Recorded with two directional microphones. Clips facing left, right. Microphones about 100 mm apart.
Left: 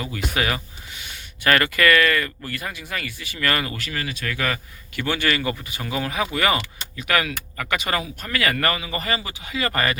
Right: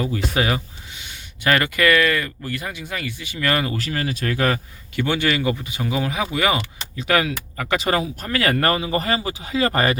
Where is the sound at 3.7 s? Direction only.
30° right (ahead or behind).